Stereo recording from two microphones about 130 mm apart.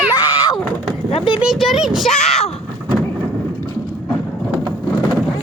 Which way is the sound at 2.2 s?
55° left (ahead or behind).